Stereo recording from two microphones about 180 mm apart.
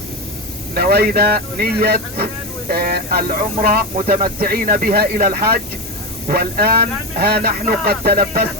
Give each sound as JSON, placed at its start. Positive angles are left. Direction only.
{"t": 0.7, "sound": "speech", "side_deg": -60}